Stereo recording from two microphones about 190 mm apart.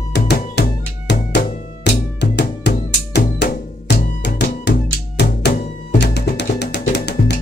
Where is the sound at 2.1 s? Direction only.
60° left (ahead or behind).